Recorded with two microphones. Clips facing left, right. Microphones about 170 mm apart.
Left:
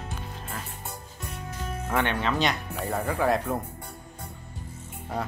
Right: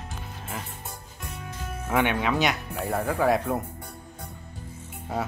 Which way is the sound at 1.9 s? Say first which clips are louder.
Right 3 dB; 10° right (ahead or behind).